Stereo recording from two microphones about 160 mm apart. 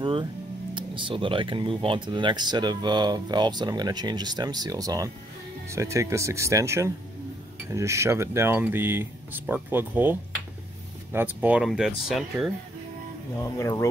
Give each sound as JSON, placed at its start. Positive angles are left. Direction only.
{"t": 0.0, "sound": "music", "side_deg": -30}
{"t": 0.7, "sound": "speech", "side_deg": -30}
{"t": 13.4, "sound": "speech", "side_deg": 15}